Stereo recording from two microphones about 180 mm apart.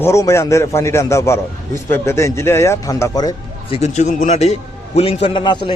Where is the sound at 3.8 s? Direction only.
40° left (ahead or behind).